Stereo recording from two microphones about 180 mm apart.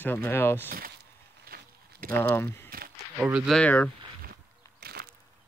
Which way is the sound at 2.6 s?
55° right (ahead or behind).